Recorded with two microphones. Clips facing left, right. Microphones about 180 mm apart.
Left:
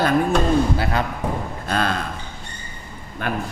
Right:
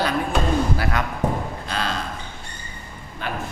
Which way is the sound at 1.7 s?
55° left (ahead or behind).